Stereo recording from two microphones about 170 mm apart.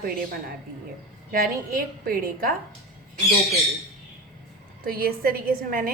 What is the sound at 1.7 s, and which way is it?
Speech, 60° right (ahead or behind).